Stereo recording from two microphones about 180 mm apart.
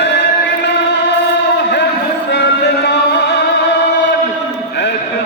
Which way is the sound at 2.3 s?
65° left (ahead or behind).